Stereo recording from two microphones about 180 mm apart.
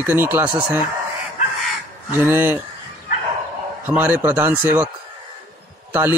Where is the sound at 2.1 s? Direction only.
10° right (ahead or behind).